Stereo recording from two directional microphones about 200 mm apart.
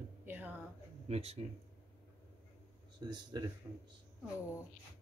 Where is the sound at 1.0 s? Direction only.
30° right (ahead or behind).